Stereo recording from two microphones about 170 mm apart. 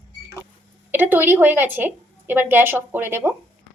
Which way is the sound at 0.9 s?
10° right (ahead or behind).